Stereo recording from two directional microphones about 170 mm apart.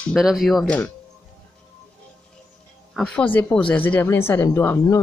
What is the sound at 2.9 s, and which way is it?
Speech, 5° left (ahead or behind).